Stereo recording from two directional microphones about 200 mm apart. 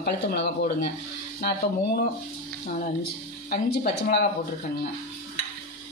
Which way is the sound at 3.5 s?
50° left (ahead or behind).